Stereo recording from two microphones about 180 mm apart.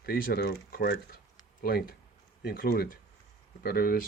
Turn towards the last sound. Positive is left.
turn(degrees=55)  # may be behind; listen again after turning